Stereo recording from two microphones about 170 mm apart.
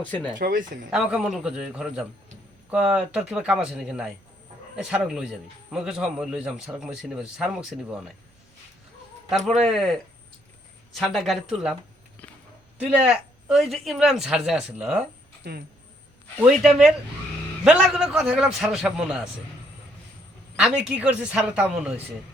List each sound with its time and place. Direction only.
0.3 s speech: 55° right (ahead or behind)
0.9 s speech: 5° right (ahead or behind)
9.6 s speech: centre (ahead or behind)
12.9 s speech: 5° right (ahead or behind)
16.6 s speech: centre (ahead or behind)
20.6 s a man's voice: 5° right (ahead or behind)